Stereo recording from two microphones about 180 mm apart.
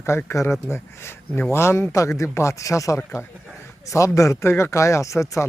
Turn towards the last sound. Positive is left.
turn(degrees=15)  # may be behind; listen again after turning